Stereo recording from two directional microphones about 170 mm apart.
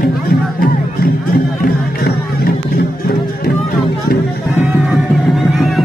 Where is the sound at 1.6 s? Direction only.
65° left (ahead or behind).